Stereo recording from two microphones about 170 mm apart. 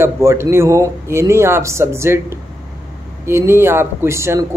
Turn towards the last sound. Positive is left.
turn(degrees=-15)  # may be behind; listen again after turning